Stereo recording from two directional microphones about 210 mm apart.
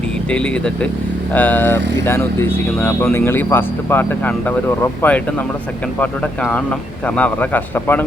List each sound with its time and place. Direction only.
0.3 s speech: 5° left (ahead or behind)